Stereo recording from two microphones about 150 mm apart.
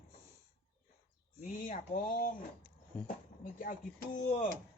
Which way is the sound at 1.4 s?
65° left (ahead or behind).